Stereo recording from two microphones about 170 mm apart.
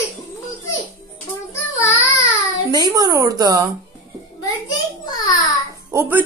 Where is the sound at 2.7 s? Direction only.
25° right (ahead or behind).